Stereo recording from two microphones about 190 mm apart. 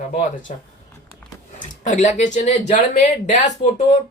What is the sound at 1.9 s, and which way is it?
Speech, 40° left (ahead or behind).